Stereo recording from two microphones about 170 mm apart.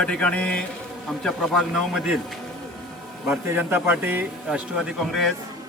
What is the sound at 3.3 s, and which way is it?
A man's voice, 10° right (ahead or behind).